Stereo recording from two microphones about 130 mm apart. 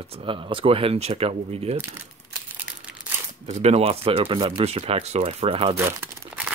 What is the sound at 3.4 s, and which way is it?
Speech, 60° right (ahead or behind).